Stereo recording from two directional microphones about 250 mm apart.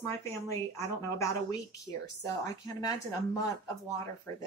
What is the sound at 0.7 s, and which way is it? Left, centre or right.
A woman's voice, centre.